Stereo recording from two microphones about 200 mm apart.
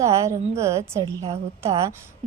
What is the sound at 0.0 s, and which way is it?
A woman's voice, 15° right (ahead or behind).